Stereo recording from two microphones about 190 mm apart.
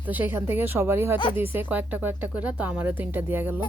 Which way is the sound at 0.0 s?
10° right (ahead or behind).